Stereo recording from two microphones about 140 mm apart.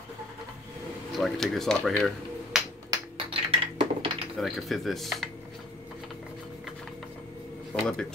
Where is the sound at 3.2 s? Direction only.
40° right (ahead or behind).